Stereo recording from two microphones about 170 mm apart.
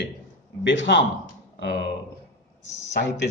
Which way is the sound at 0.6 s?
90° left.